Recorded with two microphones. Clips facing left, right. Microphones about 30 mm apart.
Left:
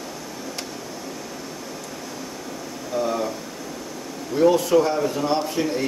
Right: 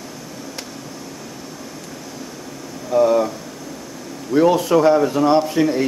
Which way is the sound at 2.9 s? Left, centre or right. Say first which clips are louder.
Right 10 dB; centre.